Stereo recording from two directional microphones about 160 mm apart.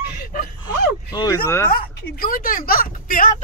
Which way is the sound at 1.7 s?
60° left (ahead or behind).